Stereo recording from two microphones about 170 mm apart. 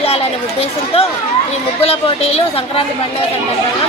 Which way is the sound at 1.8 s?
35° left (ahead or behind).